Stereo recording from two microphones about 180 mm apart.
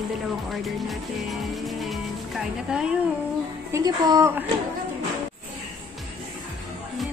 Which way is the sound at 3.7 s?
20° right (ahead or behind).